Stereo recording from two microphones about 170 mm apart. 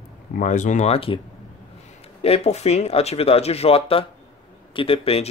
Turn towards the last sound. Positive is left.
turn(degrees=35)  # may be behind; listen again after turning